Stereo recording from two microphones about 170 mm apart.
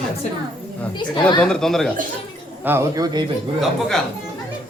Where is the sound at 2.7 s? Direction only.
15° right (ahead or behind).